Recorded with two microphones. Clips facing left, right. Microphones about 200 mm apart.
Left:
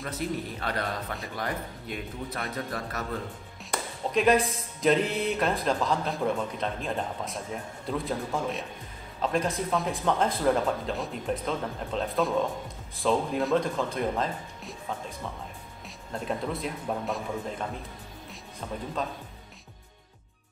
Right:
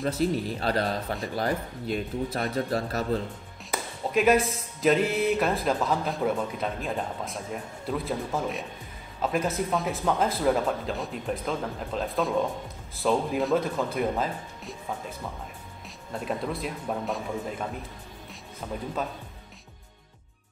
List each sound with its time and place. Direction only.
0.0 s speech: 30° right (ahead or behind)
3.7 s speech: 5° right (ahead or behind)